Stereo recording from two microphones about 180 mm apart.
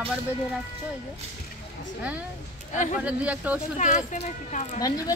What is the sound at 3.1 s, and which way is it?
Speech, 5° right (ahead or behind).